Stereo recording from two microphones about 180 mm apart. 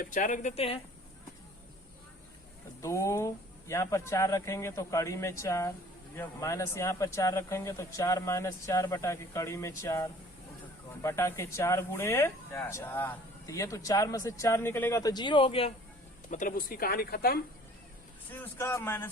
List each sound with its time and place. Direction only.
0.0 s speech: 45° left (ahead or behind)
2.8 s speech: 15° left (ahead or behind); by 15.7 s 30° left (ahead or behind)
16.3 s speech: 45° left (ahead or behind)
18.3 s speech: 10° left (ahead or behind)